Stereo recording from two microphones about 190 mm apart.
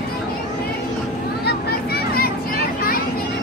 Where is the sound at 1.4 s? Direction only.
55° left (ahead or behind).